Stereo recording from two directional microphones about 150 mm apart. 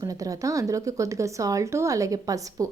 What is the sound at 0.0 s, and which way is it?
A woman's voice, 25° right (ahead or behind).